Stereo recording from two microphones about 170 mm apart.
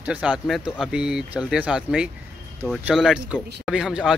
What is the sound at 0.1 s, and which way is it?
Speech, 5° right (ahead or behind).